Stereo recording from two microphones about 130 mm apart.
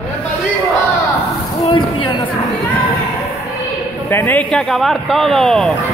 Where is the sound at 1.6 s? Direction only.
40° left (ahead or behind).